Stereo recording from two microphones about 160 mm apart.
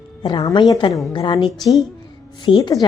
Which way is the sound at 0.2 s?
25° left (ahead or behind).